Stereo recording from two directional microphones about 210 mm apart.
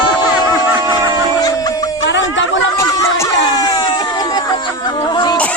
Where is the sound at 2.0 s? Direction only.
60° left (ahead or behind).